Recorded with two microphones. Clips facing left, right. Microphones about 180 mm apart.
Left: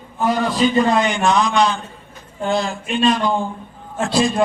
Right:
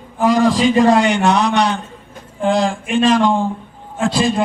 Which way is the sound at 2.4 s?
90° right.